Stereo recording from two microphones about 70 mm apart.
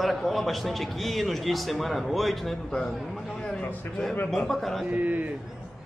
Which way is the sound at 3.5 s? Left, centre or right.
Centre.